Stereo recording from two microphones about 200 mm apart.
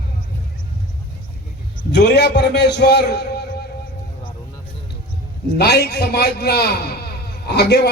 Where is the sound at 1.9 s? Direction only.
55° left (ahead or behind).